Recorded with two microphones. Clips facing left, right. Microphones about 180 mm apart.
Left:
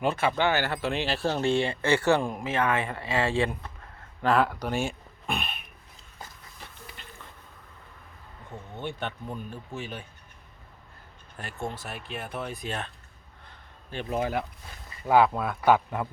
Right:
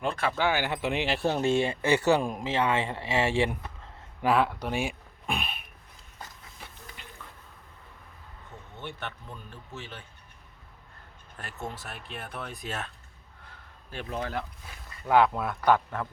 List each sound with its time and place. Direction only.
0.0 s speech: 5° left (ahead or behind); by 3.5 s 20° right (ahead or behind)
4.2 s speech: 5° right (ahead or behind)
7.0 s a sound: 15° right (ahead or behind)
8.8 s speech: 15° left (ahead or behind)
11.3 s speech: centre (ahead or behind)
13.4 s a sound: 5° right (ahead or behind)
14.1 s speech: 10° left (ahead or behind)